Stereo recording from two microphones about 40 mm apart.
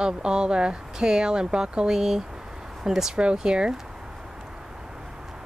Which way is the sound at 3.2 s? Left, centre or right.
Right.